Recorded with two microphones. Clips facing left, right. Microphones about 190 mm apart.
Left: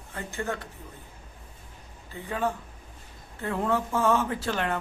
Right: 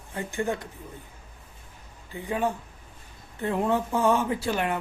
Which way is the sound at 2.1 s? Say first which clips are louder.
Right 2 dB; 15° right (ahead or behind).